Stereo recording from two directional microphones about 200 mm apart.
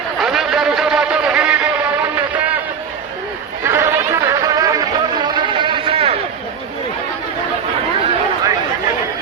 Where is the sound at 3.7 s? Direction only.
15° right (ahead or behind).